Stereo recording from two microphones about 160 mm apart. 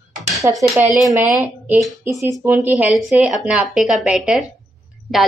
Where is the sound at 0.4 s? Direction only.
20° right (ahead or behind).